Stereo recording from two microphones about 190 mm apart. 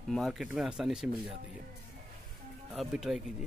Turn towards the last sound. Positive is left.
turn(degrees=0)  # may be behind; listen again after turning